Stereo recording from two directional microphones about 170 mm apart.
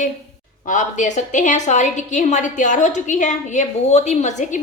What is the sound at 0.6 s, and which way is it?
A woman's voice, 50° left (ahead or behind).